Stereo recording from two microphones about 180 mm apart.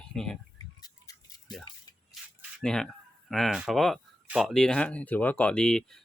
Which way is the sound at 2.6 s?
5° left (ahead or behind).